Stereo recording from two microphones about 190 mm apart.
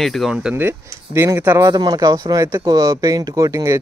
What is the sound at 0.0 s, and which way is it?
Speech, centre (ahead or behind).